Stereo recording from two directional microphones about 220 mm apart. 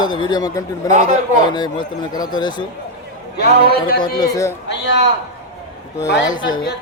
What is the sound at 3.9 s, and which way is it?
Speech, 15° left (ahead or behind).